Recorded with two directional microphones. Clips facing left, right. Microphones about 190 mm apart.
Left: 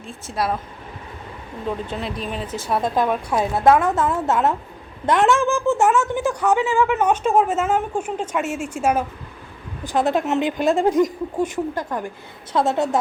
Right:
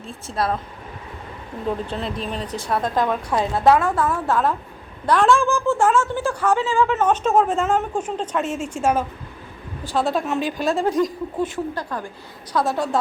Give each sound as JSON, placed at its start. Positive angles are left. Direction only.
{"t": 1.6, "sound": "speech", "side_deg": 5}
{"t": 3.8, "sound": "a woman's voice", "side_deg": 20}